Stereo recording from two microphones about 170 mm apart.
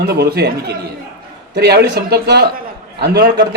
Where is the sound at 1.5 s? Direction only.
70° right (ahead or behind).